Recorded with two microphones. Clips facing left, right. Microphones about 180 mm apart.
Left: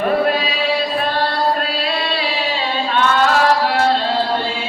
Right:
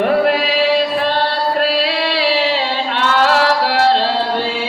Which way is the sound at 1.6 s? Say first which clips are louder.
Right 5 dB; 80° right.